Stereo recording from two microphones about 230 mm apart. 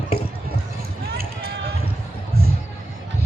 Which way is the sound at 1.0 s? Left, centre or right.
Right.